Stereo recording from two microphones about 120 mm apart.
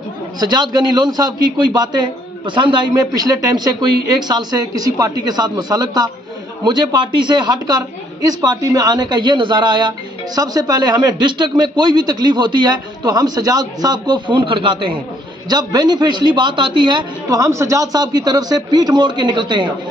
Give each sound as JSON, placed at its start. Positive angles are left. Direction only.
{"t": 0.4, "sound": "a man's voice", "side_deg": -35}
{"t": 17.4, "sound": "a man's voice", "side_deg": -25}